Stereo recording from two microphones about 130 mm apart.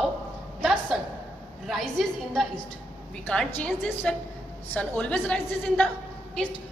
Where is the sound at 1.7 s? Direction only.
Centre (ahead or behind).